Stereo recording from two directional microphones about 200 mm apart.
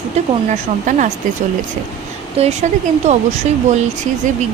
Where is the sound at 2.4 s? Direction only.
30° right (ahead or behind).